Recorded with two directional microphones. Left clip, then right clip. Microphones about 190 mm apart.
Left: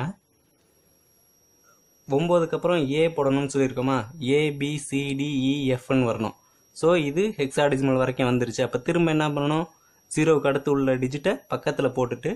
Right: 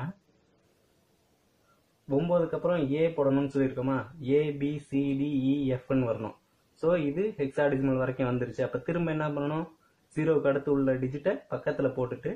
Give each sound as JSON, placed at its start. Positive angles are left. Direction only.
{"t": 2.0, "sound": "speech", "side_deg": 45}